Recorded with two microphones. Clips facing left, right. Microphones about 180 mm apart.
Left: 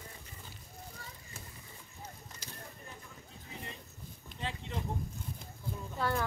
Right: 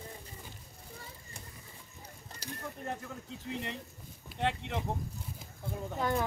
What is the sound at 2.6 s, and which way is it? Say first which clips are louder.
Speech: right 10 dB; 70° right (ahead or behind).